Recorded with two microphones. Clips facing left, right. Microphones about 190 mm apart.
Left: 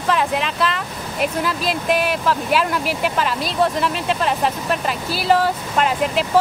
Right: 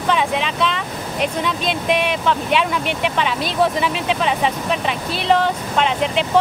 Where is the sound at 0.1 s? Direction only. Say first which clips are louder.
Even; centre (ahead or behind).